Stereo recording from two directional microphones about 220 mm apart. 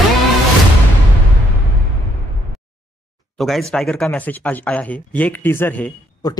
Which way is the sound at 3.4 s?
Centre (ahead or behind).